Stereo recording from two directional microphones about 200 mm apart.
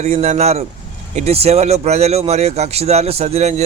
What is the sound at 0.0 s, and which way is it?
Speech, 35° right (ahead or behind).